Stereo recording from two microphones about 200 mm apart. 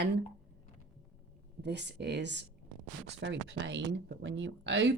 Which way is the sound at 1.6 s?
60° right (ahead or behind).